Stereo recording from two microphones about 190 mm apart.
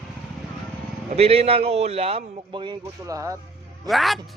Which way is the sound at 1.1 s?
30° right (ahead or behind).